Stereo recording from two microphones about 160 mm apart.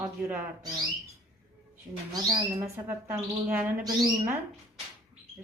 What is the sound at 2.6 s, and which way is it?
Speech, 15° right (ahead or behind).